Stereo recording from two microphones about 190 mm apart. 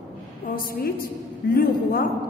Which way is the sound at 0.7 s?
50° left (ahead or behind).